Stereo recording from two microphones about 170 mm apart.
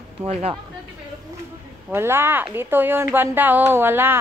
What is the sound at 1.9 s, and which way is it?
Speech, 15° right (ahead or behind).